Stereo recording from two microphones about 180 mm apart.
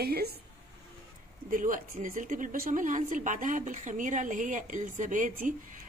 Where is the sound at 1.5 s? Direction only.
45° right (ahead or behind).